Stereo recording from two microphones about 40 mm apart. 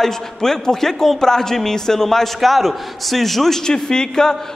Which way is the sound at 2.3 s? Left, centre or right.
Centre.